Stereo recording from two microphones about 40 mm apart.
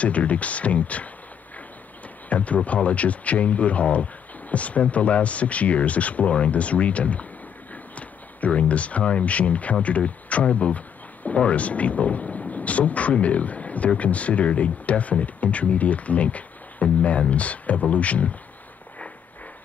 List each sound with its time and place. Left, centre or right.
0.0 s speech: left
2.2 s speech: left